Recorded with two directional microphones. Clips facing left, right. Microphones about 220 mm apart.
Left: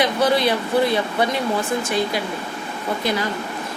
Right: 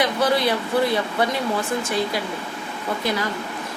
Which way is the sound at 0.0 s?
20° left (ahead or behind).